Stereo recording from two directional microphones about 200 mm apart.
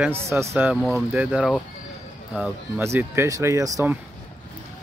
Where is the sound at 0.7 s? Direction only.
Centre (ahead or behind).